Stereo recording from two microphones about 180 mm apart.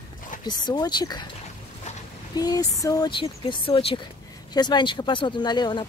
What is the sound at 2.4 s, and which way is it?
Speech, 20° left (ahead or behind).